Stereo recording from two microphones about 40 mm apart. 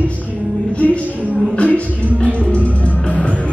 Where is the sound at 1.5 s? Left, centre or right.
Left.